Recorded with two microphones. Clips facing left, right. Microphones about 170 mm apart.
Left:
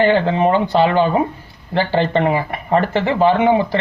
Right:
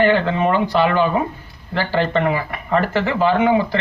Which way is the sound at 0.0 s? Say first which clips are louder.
Left 2 dB; 20° left (ahead or behind).